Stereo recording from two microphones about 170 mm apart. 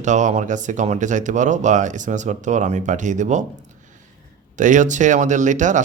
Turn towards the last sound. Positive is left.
turn(degrees=-45)  # may be behind; listen again after turning